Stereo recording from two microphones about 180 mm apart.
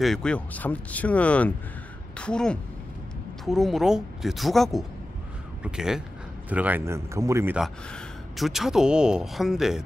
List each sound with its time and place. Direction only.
0.0 s speech: 5° left (ahead or behind); by 7.6 s 15° right (ahead or behind)
7.6 s speech: centre (ahead or behind)